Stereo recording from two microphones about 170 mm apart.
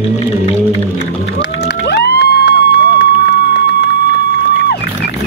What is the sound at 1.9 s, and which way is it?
Vehicle, 75° left (ahead or behind).